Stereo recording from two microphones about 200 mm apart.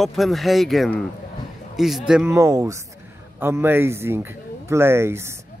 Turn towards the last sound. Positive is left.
turn(degrees=-10)  # may be behind; listen again after turning